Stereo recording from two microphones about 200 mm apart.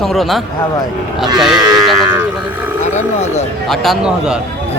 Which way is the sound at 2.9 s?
35° left (ahead or behind).